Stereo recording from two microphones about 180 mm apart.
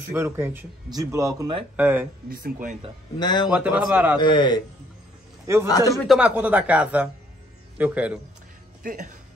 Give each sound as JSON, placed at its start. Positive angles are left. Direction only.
{"t": 0.1, "sound": "speech", "side_deg": -15}
{"t": 2.2, "sound": "speech", "side_deg": -55}
{"t": 3.2, "sound": "a man's voice", "side_deg": 25}
{"t": 3.4, "sound": "speech", "side_deg": -5}
{"t": 4.2, "sound": "a man's voice", "side_deg": 25}
{"t": 5.7, "sound": "a man's voice", "side_deg": 20}
{"t": 6.0, "sound": "speech", "side_deg": -5}
{"t": 8.8, "sound": "speech", "side_deg": -45}